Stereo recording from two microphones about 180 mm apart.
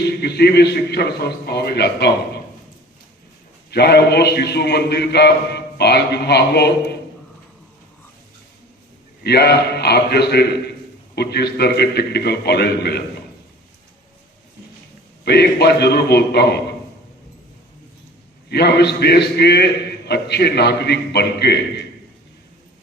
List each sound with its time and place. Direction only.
0.1 s a man's voice: 65° left (ahead or behind)
3.7 s a man's voice: 65° left (ahead or behind)
9.2 s a man's voice: 65° left (ahead or behind)
15.2 s a man's voice: 65° left (ahead or behind)
18.4 s a man's voice: 65° left (ahead or behind)